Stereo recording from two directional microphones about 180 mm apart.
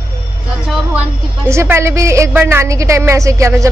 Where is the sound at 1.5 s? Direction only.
15° right (ahead or behind).